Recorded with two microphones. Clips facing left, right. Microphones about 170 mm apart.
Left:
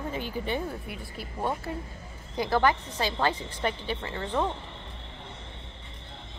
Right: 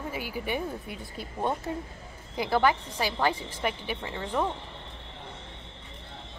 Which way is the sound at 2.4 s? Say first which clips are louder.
Even; 10° right (ahead or behind).